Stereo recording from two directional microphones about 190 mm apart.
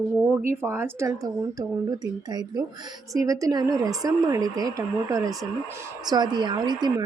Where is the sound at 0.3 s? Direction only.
10° right (ahead or behind).